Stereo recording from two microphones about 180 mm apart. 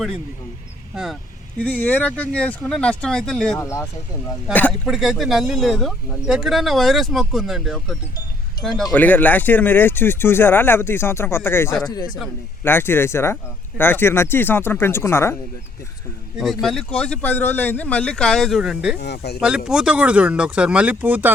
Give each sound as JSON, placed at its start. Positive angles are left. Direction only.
{"t": 1.5, "sound": "speech", "side_deg": 10}
{"t": 3.6, "sound": "speech", "side_deg": 15}
{"t": 11.9, "sound": "speech", "side_deg": 25}
{"t": 12.6, "sound": "speech", "side_deg": 10}
{"t": 16.4, "sound": "speech", "side_deg": 0}
{"t": 18.9, "sound": "speech", "side_deg": 65}
{"t": 19.4, "sound": "speech", "side_deg": -5}